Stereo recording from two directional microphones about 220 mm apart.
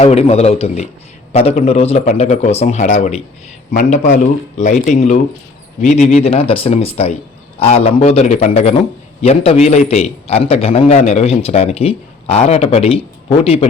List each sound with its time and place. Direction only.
0.0 s a man's voice: 30° left (ahead or behind)